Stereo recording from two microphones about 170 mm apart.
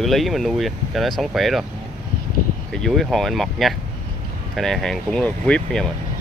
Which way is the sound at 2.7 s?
Centre (ahead or behind).